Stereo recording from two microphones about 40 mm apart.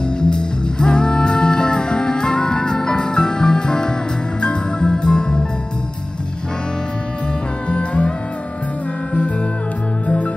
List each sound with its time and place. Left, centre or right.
0.2 s music: left
7.7 s music: left
10.0 s music: left